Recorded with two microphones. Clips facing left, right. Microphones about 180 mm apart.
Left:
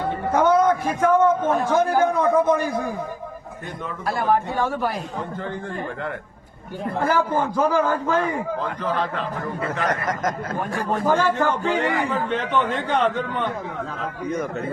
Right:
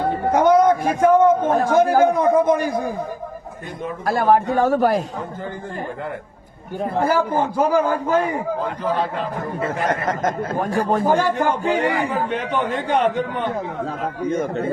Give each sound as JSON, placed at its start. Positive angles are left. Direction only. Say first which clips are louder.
{"t": 0.3, "sound": "a man's voice", "louder": "right 3 dB", "side_deg": -15}
{"t": 4.0, "sound": "a man's voice", "louder": "right 5 dB", "side_deg": -45}
{"t": 7.1, "sound": "a man's voice", "louder": "right 2 dB", "side_deg": -10}
{"t": 9.8, "sound": "a man's voice", "louder": "right 3 dB", "side_deg": -30}
{"t": 11.1, "sound": "a man's voice", "louder": "right 2 dB", "side_deg": -15}
{"t": 14.3, "sound": "speech", "louder": "right 4 dB", "side_deg": -25}